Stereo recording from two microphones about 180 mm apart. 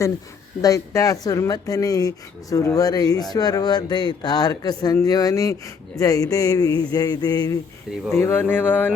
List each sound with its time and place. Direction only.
0.6 s speech: 20° left (ahead or behind)